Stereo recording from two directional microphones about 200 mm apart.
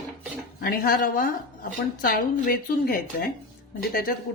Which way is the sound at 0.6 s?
45° left (ahead or behind).